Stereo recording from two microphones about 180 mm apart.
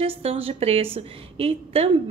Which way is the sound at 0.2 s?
30° right (ahead or behind).